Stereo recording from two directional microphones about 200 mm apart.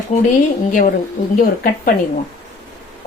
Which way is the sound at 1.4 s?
45° left (ahead or behind).